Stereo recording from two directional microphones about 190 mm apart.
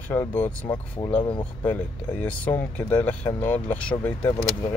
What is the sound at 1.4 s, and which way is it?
Speech, 10° left (ahead or behind).